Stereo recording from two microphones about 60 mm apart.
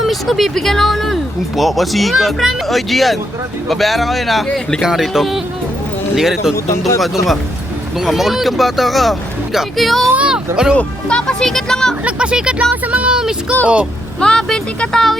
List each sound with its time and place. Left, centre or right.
0.0 s speech: centre
6.7 s speech: left
7.0 s speech: centre
10.2 s speech: centre
10.8 s speech: centre
12.0 s speech: centre
14.2 s speech: centre